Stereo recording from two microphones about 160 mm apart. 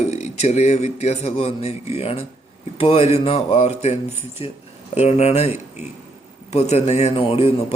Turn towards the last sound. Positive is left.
turn(degrees=35)  # may be behind; listen again after turning